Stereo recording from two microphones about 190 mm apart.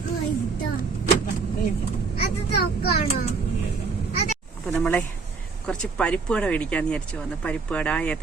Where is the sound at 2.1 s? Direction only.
30° left (ahead or behind).